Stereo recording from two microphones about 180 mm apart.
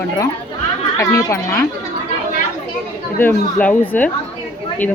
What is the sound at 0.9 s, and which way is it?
Speech, 15° left (ahead or behind).